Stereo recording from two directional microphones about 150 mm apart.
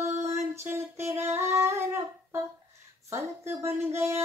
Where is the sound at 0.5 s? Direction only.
15° right (ahead or behind).